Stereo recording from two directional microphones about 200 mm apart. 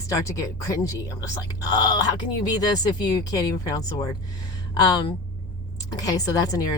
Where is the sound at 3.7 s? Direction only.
20° left (ahead or behind).